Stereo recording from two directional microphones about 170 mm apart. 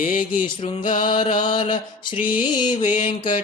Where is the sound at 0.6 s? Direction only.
35° left (ahead or behind).